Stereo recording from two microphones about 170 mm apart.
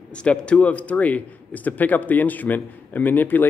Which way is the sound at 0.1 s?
5° left (ahead or behind).